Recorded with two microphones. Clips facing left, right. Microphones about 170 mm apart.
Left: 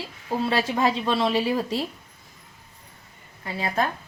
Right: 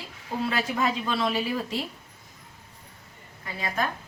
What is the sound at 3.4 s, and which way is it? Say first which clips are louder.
Speech: left 4 dB; 30° left (ahead or behind).